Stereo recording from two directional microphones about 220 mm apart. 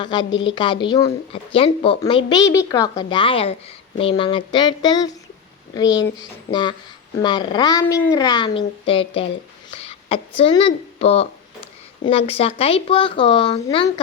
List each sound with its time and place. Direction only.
0.0 s a woman's voice: 20° left (ahead or behind)